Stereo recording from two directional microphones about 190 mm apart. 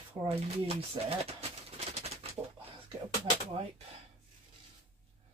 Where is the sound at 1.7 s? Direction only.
35° right (ahead or behind).